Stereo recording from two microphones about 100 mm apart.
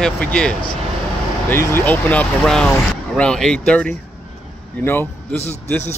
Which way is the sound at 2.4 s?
5° left (ahead or behind).